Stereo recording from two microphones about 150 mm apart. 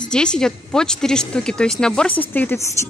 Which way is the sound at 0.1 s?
5° left (ahead or behind).